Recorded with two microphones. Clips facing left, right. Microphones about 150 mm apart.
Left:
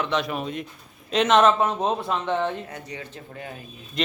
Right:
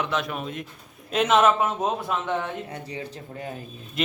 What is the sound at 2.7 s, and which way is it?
Speech, 30° right (ahead or behind).